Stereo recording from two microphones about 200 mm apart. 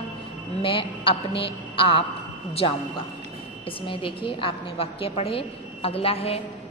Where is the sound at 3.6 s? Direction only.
25° left (ahead or behind).